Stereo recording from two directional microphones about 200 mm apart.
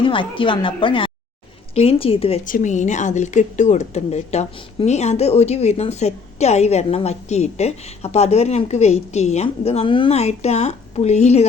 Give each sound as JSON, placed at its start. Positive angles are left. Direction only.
{"t": 0.0, "sound": "speech", "side_deg": 25}
{"t": 2.4, "sound": "a woman's voice", "side_deg": 40}